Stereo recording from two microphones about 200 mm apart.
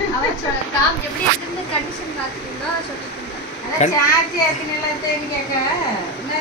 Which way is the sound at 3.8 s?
35° left (ahead or behind).